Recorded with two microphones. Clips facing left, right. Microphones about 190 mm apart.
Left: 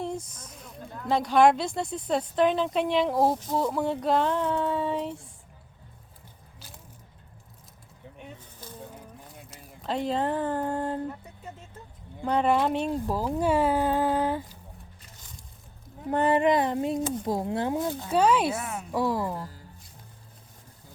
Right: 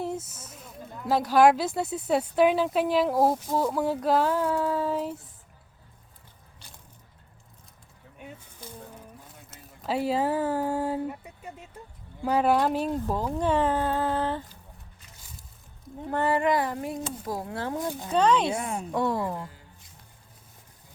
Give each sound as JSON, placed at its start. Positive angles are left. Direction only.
{"t": 0.0, "sound": "speech", "side_deg": -5}
{"t": 9.8, "sound": "speech", "side_deg": -5}
{"t": 16.0, "sound": "speech", "side_deg": 20}
{"t": 18.5, "sound": "a woman's voice", "side_deg": -30}
{"t": 18.9, "sound": "speech", "side_deg": 0}